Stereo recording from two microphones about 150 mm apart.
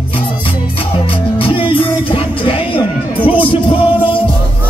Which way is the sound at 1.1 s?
35° left (ahead or behind).